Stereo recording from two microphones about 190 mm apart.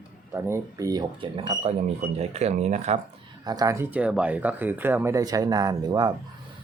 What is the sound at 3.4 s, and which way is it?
Speech, 20° right (ahead or behind).